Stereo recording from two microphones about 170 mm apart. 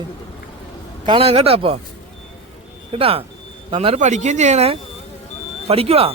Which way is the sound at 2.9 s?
35° right (ahead or behind).